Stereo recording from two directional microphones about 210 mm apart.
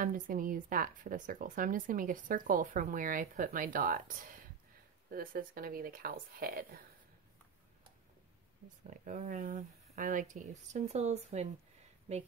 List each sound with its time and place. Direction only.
0.0 s a woman's voice: 40° right (ahead or behind)
8.9 s a woman's voice: 40° right (ahead or behind)